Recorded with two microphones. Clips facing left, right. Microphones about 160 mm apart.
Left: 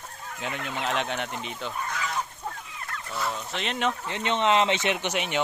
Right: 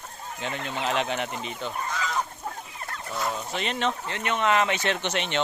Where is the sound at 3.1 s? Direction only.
Centre (ahead or behind).